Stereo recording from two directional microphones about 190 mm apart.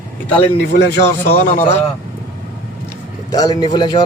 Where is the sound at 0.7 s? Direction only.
60° left (ahead or behind); by 1.8 s 45° left (ahead or behind).